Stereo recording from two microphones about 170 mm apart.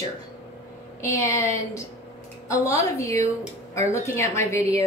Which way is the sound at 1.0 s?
15° left (ahead or behind).